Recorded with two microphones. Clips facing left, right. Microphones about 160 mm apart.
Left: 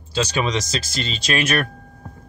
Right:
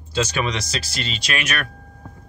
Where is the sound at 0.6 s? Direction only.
45° left (ahead or behind).